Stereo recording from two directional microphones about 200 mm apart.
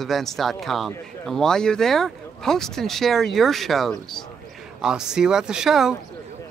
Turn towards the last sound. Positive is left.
turn(degrees=0)  # may be behind; listen again after turning